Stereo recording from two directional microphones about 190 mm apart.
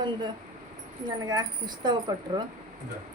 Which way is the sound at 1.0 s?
20° right (ahead or behind).